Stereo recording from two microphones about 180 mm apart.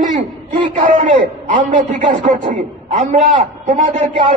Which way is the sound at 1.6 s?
45° right (ahead or behind).